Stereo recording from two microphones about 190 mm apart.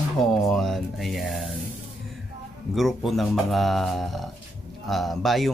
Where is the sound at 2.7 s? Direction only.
Centre (ahead or behind).